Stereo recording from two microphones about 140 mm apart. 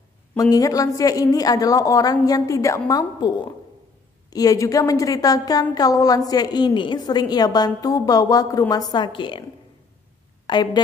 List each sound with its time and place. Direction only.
0.4 s a woman's voice: 25° left (ahead or behind)
10.4 s a woman's voice: 30° left (ahead or behind)